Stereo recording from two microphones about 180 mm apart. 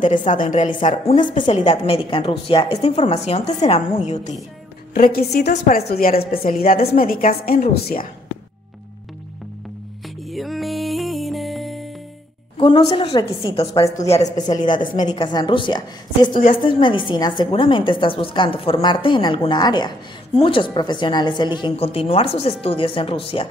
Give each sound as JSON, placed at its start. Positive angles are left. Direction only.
{"t": 0.0, "sound": "a woman's voice", "side_deg": 45}
{"t": 4.9, "sound": "a woman's voice", "side_deg": 55}
{"t": 10.2, "sound": "music", "side_deg": 0}
{"t": 12.5, "sound": "a woman's voice", "side_deg": 30}
{"t": 15.0, "sound": "a woman's voice", "side_deg": 25}